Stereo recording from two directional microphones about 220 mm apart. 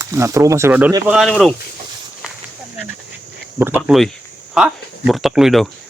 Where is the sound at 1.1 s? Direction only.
Centre (ahead or behind).